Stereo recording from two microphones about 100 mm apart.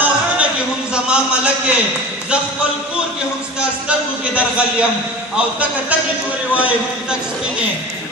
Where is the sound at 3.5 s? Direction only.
10° right (ahead or behind).